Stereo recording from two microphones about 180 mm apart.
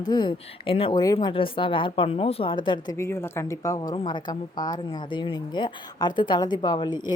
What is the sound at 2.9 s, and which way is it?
A woman's voice, 15° left (ahead or behind).